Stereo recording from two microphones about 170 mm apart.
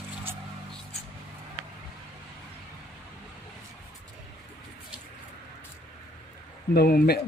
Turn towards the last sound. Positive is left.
turn(degrees=65)  # may be behind; listen again after turning